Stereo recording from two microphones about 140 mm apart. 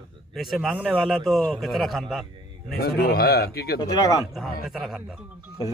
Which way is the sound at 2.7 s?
90° left.